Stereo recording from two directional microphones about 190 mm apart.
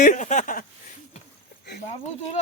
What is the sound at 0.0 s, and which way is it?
Speech, 40° left (ahead or behind).